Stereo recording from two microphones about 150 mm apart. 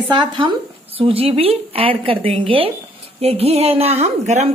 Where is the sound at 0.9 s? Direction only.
40° right (ahead or behind).